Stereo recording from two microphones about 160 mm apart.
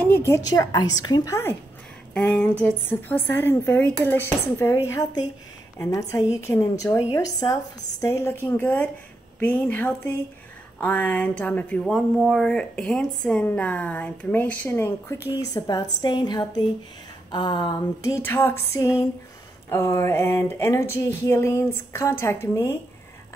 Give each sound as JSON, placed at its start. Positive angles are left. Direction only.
{"t": 0.0, "sound": "a woman's voice", "side_deg": 15}